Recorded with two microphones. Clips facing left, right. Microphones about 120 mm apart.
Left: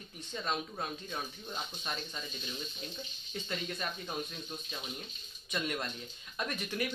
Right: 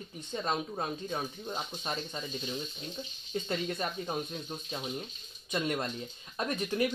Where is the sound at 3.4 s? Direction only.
35° right (ahead or behind).